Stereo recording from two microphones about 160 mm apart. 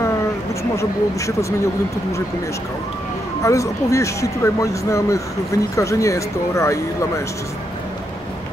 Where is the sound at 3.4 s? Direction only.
20° left (ahead or behind).